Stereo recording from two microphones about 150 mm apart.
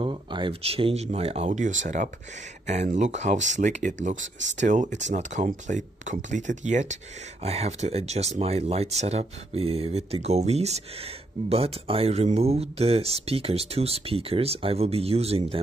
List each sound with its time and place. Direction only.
0.0 s speech: 35° right (ahead or behind)